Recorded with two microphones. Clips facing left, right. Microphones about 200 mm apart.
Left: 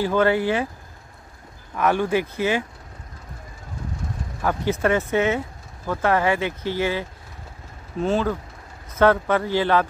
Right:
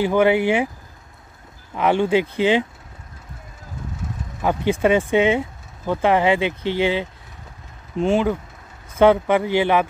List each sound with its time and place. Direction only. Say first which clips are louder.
0.0 s speech: right 3 dB; 15° right (ahead or behind)
1.8 s speech: right 3 dB; 20° right (ahead or behind)
4.4 s speech: right 3 dB; 20° right (ahead or behind)